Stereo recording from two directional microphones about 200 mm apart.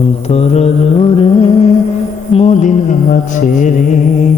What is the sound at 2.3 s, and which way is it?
Music, 30° left (ahead or behind).